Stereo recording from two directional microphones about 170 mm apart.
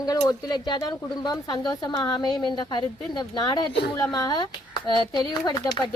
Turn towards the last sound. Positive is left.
turn(degrees=25)  # may be behind; listen again after turning